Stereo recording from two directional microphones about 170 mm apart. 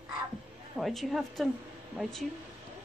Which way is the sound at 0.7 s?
Centre (ahead or behind).